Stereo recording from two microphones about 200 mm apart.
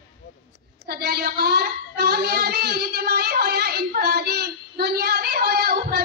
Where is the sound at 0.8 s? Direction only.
50° right (ahead or behind).